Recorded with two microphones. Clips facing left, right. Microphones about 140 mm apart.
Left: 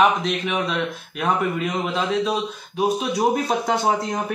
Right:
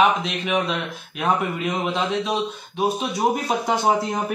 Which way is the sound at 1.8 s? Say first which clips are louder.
Left 2 dB; centre (ahead or behind).